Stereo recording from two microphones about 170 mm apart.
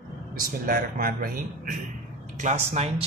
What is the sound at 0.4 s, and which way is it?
Speech, 55° right (ahead or behind).